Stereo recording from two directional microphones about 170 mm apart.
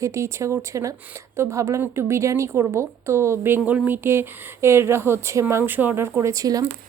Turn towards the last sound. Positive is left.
turn(degrees=-20)  # may be behind; listen again after turning